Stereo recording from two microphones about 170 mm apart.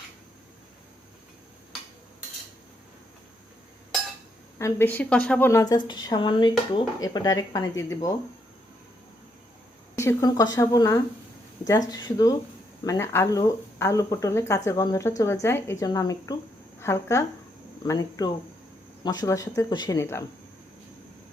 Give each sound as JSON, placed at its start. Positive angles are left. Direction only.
{"t": 4.5, "sound": "a woman's voice", "side_deg": 15}
{"t": 9.9, "sound": "a woman's voice", "side_deg": 15}